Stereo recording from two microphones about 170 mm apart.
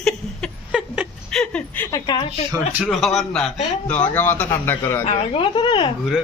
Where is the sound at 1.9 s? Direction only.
25° left (ahead or behind).